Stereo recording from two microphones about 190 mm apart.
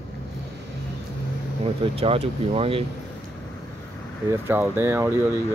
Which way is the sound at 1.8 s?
30° right (ahead or behind).